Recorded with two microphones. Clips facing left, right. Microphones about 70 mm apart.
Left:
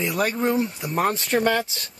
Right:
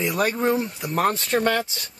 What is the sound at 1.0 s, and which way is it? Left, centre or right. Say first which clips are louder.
Speech: right 1 dB; centre.